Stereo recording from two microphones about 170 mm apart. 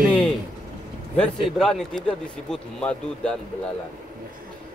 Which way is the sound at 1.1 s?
5° left (ahead or behind).